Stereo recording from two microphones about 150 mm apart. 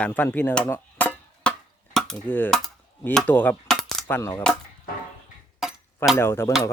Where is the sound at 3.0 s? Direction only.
10° left (ahead or behind).